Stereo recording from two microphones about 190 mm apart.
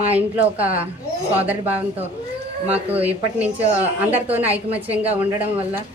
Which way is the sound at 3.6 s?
35° right (ahead or behind).